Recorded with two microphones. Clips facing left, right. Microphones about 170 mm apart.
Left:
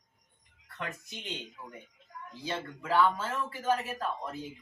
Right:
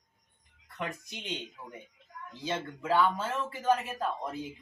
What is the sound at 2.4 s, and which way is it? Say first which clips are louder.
Speech: right 3 dB; 20° right (ahead or behind).